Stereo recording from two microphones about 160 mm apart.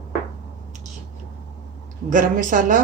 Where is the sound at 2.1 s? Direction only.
55° right (ahead or behind).